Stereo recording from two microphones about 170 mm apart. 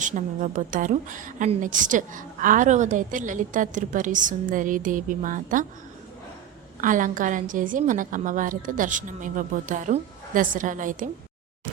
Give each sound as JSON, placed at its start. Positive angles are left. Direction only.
{"t": 0.0, "sound": "a woman's voice", "side_deg": -45}
{"t": 6.8, "sound": "a woman's voice", "side_deg": -50}